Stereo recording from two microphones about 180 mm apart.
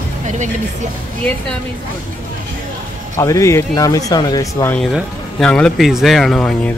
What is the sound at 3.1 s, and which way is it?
Speech, 15° left (ahead or behind).